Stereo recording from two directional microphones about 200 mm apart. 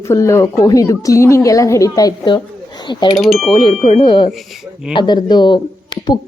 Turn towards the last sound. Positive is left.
turn(degrees=20)  # may be behind; listen again after turning